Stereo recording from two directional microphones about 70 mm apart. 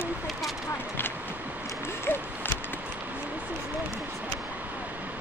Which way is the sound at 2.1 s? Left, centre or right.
Left.